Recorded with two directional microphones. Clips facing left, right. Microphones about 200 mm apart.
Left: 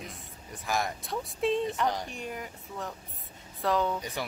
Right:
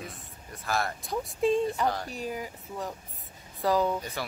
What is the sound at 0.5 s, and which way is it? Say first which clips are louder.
Speech: right 1 dB; 15° left (ahead or behind).